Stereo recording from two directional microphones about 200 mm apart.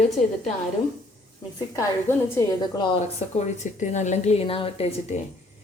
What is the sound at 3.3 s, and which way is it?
A woman's voice, 35° left (ahead or behind).